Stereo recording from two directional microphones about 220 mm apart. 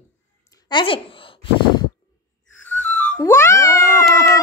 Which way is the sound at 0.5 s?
20° left (ahead or behind).